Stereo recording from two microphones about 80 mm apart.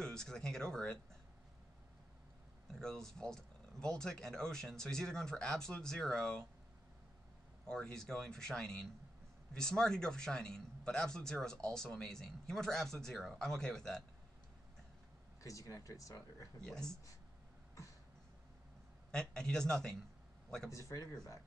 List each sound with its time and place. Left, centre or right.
0.0 s a man's voice: centre
2.7 s a man's voice: centre
7.6 s a man's voice: centre
15.4 s speech: left
16.6 s a man's voice: centre
19.1 s a man's voice: centre
20.9 s speech: left